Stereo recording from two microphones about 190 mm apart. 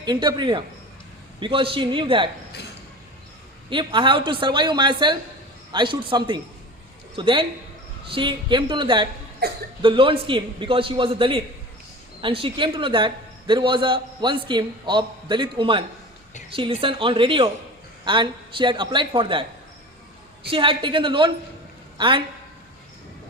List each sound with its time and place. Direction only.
0.0 s a man's voice: 25° right (ahead or behind)
3.7 s a man's voice: 25° right (ahead or behind)
9.4 s cough: 55° right (ahead or behind)
9.8 s a man's voice: 25° right (ahead or behind)
20.5 s a man's voice: 25° right (ahead or behind)